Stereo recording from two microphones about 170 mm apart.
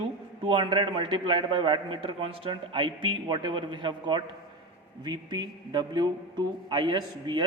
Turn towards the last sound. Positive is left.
turn(degrees=-25)  # may be behind; listen again after turning